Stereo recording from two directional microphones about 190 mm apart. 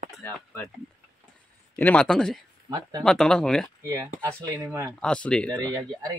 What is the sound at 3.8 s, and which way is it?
Speech, 15° right (ahead or behind).